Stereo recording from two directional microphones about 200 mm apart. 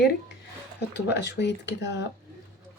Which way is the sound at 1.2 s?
60° left (ahead or behind).